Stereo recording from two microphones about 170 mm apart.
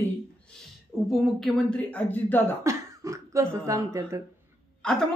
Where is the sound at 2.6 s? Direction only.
15° right (ahead or behind).